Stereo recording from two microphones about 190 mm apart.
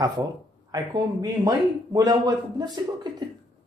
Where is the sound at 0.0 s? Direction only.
20° right (ahead or behind).